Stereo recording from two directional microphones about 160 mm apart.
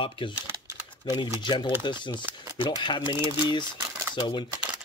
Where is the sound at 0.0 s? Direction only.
35° left (ahead or behind).